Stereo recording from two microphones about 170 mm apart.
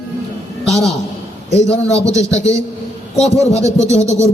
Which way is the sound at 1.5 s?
40° left (ahead or behind).